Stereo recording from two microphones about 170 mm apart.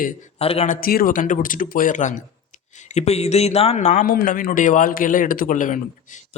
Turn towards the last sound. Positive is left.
turn(degrees=50)  # may be behind; listen again after turning